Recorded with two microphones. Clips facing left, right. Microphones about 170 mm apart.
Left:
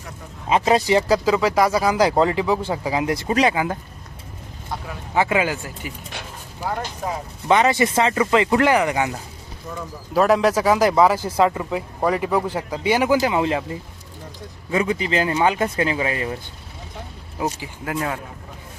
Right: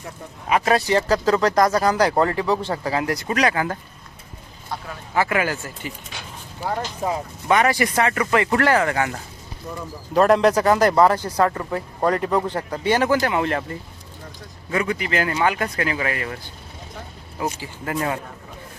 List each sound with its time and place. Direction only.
0.4 s speech: 20° left (ahead or behind)
3.2 s speech: 25° left (ahead or behind)
3.5 s speech: 15° left (ahead or behind)
5.1 s speech: 20° left (ahead or behind)
7.4 s speech: 20° left (ahead or behind)
10.2 s speech: centre (ahead or behind)
14.7 s speech: 20° left (ahead or behind)
17.8 s speech: centre (ahead or behind)